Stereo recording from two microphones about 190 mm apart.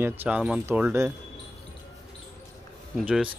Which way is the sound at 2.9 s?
5° right (ahead or behind).